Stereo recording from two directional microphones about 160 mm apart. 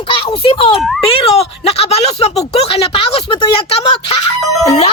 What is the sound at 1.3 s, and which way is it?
Speech, 40° left (ahead or behind).